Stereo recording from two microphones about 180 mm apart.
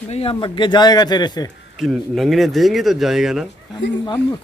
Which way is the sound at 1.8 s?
Centre (ahead or behind).